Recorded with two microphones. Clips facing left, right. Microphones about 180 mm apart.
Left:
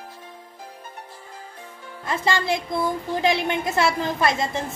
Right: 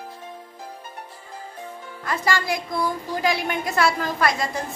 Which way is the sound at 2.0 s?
25° left (ahead or behind).